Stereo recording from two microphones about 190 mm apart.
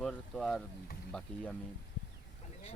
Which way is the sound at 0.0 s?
5° left (ahead or behind).